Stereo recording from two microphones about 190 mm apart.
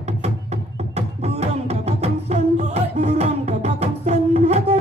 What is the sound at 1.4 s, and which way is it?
Music, 35° right (ahead or behind).